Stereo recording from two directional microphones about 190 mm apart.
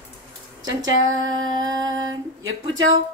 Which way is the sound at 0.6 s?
85° right.